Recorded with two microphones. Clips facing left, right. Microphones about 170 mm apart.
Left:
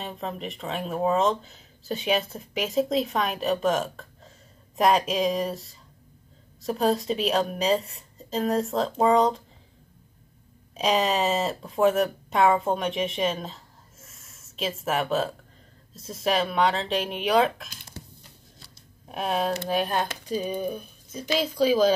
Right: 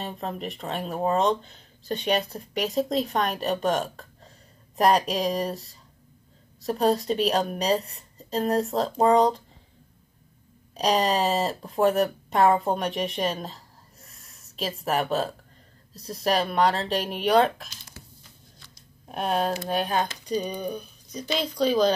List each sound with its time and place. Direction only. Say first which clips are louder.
0.0 s speech: right 1 dB; centre (ahead or behind)
10.7 s speech: right 1 dB; centre (ahead or behind)
17.9 s a sound: left 6 dB; 25° left (ahead or behind)
19.0 s speech: right 1 dB; centre (ahead or behind)